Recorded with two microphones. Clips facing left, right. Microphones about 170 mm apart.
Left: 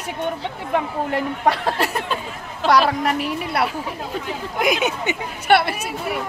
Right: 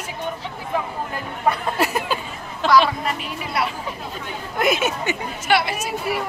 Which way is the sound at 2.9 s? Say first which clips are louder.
Left 5 dB; 65° left (ahead or behind).